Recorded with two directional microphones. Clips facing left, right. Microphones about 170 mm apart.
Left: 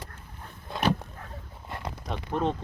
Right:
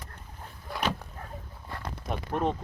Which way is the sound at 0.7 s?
20° left (ahead or behind).